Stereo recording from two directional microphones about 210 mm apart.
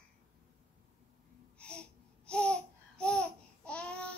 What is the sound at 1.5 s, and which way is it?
Babbling, 5° left (ahead or behind).